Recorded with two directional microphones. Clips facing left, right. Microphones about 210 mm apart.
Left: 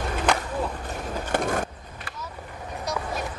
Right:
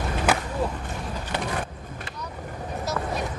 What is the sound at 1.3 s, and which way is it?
Vehicle, 45° left (ahead or behind).